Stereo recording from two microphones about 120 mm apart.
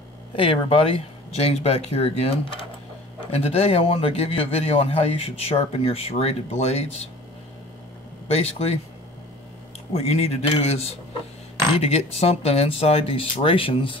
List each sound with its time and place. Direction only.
0.4 s speech: 50° left (ahead or behind)
8.3 s speech: 60° left (ahead or behind)
9.9 s speech: 60° left (ahead or behind)